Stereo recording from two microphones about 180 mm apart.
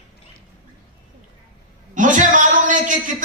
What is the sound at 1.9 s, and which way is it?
A man's voice, 45° right (ahead or behind).